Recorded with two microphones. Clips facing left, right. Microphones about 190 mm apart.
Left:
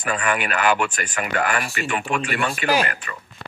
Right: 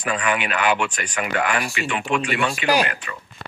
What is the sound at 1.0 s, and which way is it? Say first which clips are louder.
Speech: right 1 dB; centre (ahead or behind).